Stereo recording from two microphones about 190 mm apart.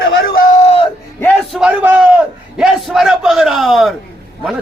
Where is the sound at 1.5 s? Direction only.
5° right (ahead or behind).